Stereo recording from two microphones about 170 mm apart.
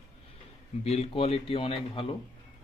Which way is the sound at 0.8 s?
40° left (ahead or behind).